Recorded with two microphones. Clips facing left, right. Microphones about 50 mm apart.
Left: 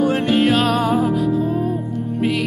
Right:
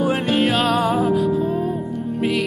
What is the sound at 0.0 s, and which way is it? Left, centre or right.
Music, centre.